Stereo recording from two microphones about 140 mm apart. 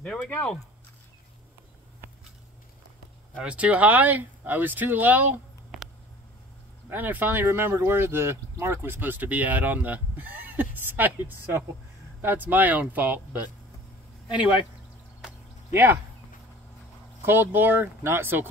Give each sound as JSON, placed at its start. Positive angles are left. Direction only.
{"t": 0.0, "sound": "speech", "side_deg": 10}
{"t": 3.4, "sound": "speech", "side_deg": -10}
{"t": 6.9, "sound": "speech", "side_deg": -10}
{"t": 15.7, "sound": "speech", "side_deg": -20}
{"t": 17.2, "sound": "speech", "side_deg": -15}